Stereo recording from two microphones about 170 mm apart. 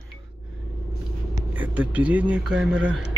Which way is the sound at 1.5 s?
10° right (ahead or behind).